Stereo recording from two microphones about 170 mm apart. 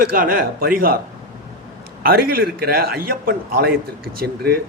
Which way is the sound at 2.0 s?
65° right (ahead or behind).